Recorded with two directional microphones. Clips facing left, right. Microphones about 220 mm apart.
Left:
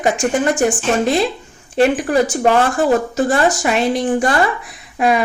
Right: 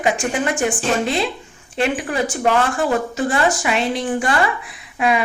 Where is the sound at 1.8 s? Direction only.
40° left (ahead or behind).